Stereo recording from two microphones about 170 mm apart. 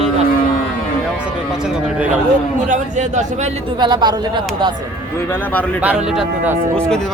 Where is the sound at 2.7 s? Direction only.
45° right (ahead or behind).